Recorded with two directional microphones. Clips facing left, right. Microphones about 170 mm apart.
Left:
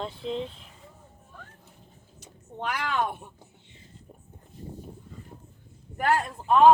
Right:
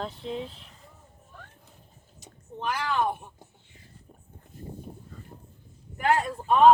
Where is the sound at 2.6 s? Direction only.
65° left (ahead or behind).